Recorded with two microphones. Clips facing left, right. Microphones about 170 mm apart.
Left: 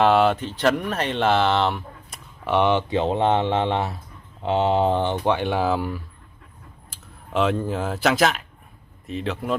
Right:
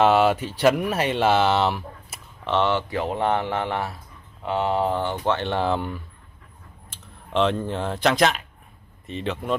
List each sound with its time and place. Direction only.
0.0 s speech: centre (ahead or behind)
2.4 s speech: 15° left (ahead or behind)
7.3 s speech: 5° left (ahead or behind)